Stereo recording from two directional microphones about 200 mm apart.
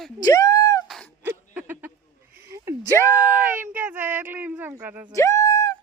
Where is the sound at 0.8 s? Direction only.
Centre (ahead or behind).